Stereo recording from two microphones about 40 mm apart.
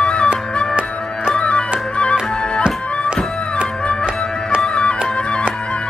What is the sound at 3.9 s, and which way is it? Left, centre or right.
Music, left.